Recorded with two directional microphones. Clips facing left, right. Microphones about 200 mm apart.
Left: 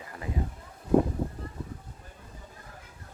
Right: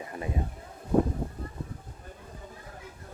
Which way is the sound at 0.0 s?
25° right (ahead or behind).